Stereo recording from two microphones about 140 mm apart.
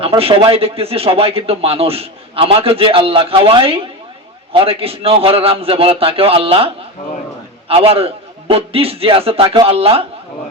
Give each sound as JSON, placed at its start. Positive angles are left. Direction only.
{"t": 0.0, "sound": "speech", "side_deg": -45}
{"t": 7.7, "sound": "speech", "side_deg": -40}